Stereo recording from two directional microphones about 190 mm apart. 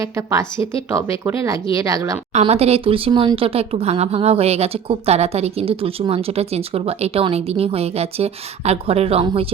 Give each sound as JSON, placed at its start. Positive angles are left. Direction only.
{"t": 0.3, "sound": "speech", "side_deg": -15}
{"t": 2.3, "sound": "speech", "side_deg": -30}